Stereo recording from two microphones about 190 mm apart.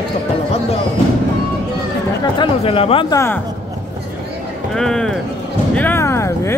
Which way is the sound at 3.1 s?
15° left (ahead or behind).